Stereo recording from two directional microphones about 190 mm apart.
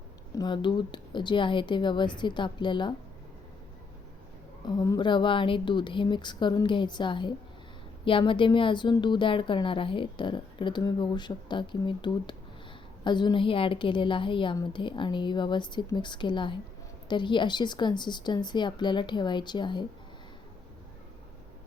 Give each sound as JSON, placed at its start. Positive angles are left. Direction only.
{"t": 0.3, "sound": "a woman's voice", "side_deg": 25}
{"t": 4.6, "sound": "a woman's voice", "side_deg": 20}